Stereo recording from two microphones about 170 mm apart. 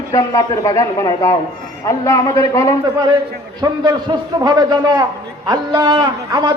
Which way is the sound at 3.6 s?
25° right (ahead or behind).